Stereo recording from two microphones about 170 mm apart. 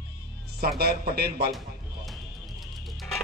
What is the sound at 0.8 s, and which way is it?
Speech, 65° right (ahead or behind).